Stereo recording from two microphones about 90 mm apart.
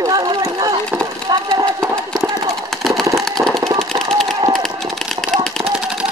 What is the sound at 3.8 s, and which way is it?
Jackhammer, 90° right.